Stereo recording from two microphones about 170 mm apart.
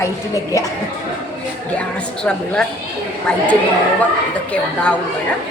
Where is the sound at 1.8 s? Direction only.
5° left (ahead or behind).